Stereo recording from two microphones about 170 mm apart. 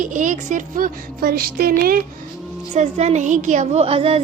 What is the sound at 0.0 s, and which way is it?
A woman's voice, 50° right (ahead or behind).